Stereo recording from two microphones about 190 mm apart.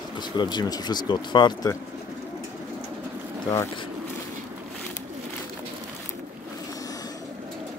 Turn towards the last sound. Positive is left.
turn(degrees=20)  # may be behind; listen again after turning